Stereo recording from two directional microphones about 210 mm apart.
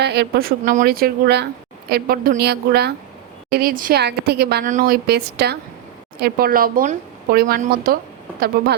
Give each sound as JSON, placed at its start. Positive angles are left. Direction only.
{"t": 0.0, "sound": "speech", "side_deg": -50}